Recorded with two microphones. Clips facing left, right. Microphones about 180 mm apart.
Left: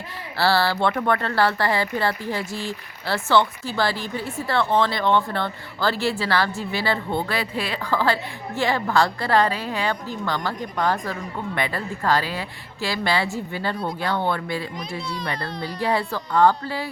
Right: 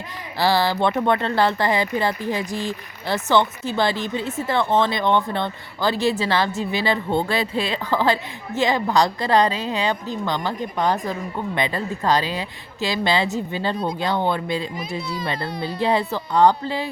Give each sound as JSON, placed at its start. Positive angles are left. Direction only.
{"t": 0.3, "sound": "speech", "side_deg": -15}